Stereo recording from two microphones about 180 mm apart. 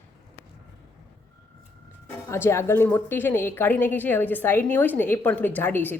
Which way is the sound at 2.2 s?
15° left (ahead or behind).